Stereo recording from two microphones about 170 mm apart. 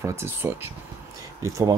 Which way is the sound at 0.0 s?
15° right (ahead or behind).